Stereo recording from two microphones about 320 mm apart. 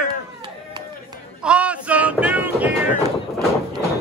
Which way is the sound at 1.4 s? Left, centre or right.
Centre.